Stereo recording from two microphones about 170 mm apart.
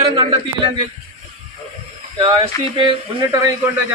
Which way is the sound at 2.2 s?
35° right (ahead or behind).